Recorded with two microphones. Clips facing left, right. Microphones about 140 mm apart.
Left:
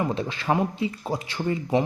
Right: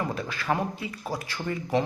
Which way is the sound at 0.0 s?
25° left (ahead or behind).